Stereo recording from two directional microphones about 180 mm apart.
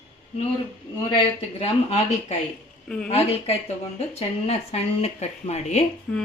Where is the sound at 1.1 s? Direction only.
35° left (ahead or behind).